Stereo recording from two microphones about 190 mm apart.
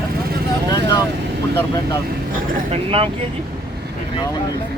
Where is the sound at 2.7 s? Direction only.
30° right (ahead or behind).